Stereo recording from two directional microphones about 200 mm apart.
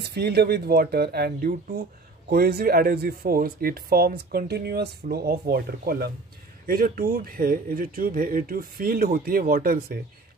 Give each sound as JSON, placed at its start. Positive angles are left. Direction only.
{"t": 0.0, "sound": "speech", "side_deg": -55}